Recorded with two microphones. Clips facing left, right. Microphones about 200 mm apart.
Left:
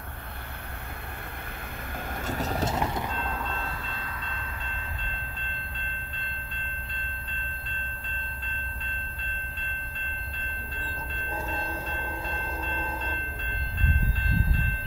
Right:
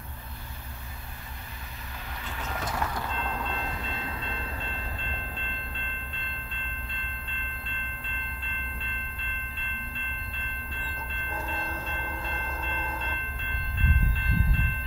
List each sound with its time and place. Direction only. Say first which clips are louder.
2.2 s a sound: left 7 dB; 40° left (ahead or behind)
2.6 s mechanisms: even; 20° left (ahead or behind)
3.2 s train: even; 10° left (ahead or behind)
3.5 s train: right 1 dB; 20° right (ahead or behind)
5.0 s train: right 2 dB; 40° left (ahead or behind)